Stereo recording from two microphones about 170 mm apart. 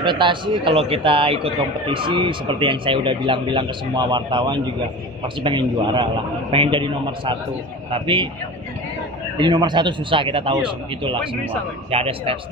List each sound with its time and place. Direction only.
0.0 s a man's voice: 25° right (ahead or behind)
9.4 s a man's voice: 25° right (ahead or behind)